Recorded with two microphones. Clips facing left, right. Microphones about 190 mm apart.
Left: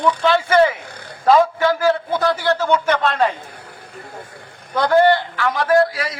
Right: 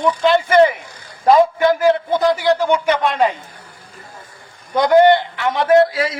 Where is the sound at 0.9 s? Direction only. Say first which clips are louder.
Left 5 dB; 60° left (ahead or behind).